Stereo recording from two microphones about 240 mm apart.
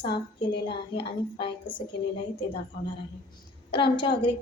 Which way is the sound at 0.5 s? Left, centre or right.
Left.